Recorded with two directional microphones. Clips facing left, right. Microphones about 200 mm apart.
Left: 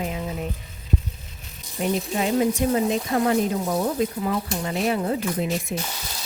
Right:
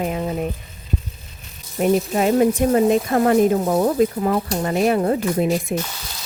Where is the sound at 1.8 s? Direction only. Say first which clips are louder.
Right 6 dB; 50° right (ahead or behind).